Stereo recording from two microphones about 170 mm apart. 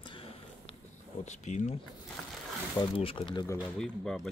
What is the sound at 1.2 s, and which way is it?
Speech, 45° left (ahead or behind).